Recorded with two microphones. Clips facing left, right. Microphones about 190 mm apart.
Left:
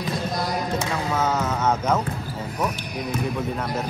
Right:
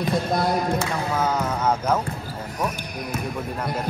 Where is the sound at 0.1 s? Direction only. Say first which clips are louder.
Right 4 dB; 55° right (ahead or behind).